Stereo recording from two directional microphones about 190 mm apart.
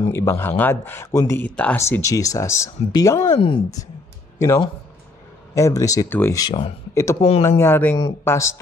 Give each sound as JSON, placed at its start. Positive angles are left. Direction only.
{"t": 0.1, "sound": "speech", "side_deg": 15}
{"t": 4.4, "sound": "speech", "side_deg": 15}
{"t": 7.2, "sound": "speech", "side_deg": 30}
{"t": 7.4, "sound": "speech", "side_deg": 15}